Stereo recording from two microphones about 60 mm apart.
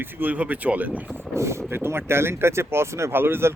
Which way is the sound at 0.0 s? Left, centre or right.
Right.